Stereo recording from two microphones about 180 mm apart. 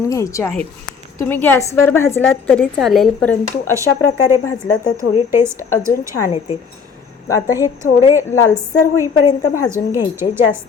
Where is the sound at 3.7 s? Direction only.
15° right (ahead or behind).